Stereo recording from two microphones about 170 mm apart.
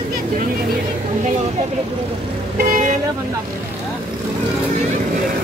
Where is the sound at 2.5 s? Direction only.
50° right (ahead or behind).